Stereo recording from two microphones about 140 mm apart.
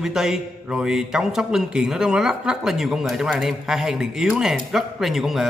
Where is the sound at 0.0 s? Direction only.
5° right (ahead or behind).